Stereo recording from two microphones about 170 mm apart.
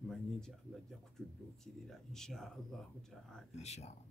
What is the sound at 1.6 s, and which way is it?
Speech, 5° left (ahead or behind).